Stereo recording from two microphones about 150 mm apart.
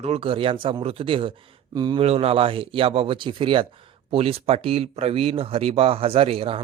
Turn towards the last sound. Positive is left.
turn(degrees=-40)  # may be behind; listen again after turning